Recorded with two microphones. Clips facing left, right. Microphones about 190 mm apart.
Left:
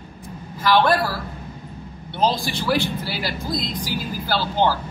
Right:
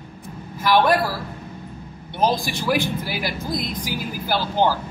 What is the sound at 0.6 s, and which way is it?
Speech, 15° right (ahead or behind).